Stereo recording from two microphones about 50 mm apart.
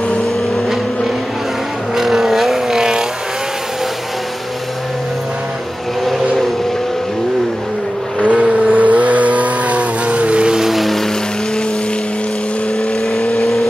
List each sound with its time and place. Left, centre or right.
0.6 s vehicle: centre
6.0 s vehicle: centre
8.2 s vehicle: right
10.7 s music: centre
13.4 s vehicle: centre